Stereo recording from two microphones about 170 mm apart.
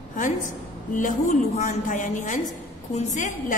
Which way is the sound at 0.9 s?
45° left (ahead or behind).